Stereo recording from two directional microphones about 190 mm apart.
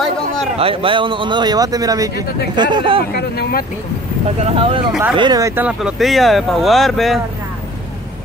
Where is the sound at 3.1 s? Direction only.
55° left (ahead or behind).